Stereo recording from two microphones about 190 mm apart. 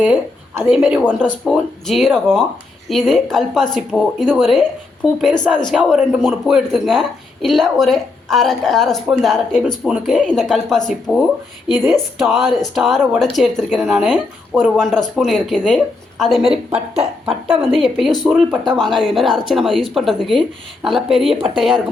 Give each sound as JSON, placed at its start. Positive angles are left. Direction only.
{"t": 0.6, "sound": "a woman's voice", "side_deg": -5}
{"t": 16.7, "sound": "speech", "side_deg": -35}
{"t": 17.7, "sound": "a woman's voice", "side_deg": 0}